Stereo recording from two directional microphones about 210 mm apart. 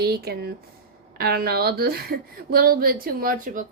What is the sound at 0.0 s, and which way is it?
A woman's voice, 50° right (ahead or behind).